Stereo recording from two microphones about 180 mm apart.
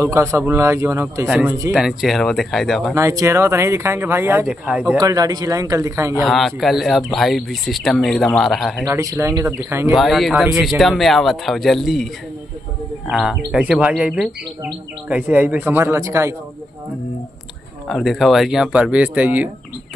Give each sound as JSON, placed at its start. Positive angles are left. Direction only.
{"t": 0.0, "sound": "speech", "side_deg": -15}
{"t": 1.7, "sound": "speech", "side_deg": 0}
{"t": 2.9, "sound": "speech", "side_deg": -15}
{"t": 4.9, "sound": "a man's voice", "side_deg": -20}
{"t": 6.2, "sound": "speech", "side_deg": 0}
{"t": 8.8, "sound": "speech", "side_deg": -15}
{"t": 9.9, "sound": "speech", "side_deg": 0}
{"t": 13.1, "sound": "speech", "side_deg": -5}
{"t": 17.8, "sound": "speech", "side_deg": 0}